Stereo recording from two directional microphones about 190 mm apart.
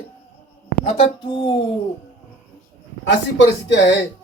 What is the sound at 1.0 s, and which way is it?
Speech, 25° left (ahead or behind).